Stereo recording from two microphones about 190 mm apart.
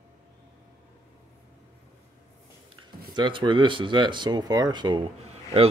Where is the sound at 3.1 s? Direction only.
25° right (ahead or behind).